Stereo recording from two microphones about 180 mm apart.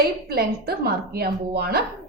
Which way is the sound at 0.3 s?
60° right (ahead or behind).